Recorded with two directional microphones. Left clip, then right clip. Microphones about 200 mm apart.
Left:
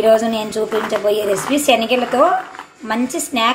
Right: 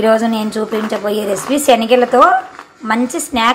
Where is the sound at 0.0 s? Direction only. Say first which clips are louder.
Even; 10° right (ahead or behind).